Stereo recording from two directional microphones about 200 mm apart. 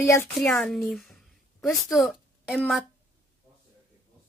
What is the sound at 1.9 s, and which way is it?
Speech, centre (ahead or behind).